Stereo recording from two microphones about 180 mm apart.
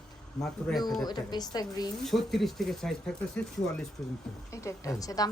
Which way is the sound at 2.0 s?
Centre (ahead or behind).